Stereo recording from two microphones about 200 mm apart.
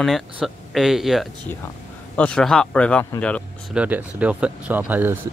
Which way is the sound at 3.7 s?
5° right (ahead or behind).